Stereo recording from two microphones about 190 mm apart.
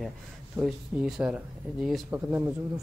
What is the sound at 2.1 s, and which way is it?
Speech, 10° right (ahead or behind).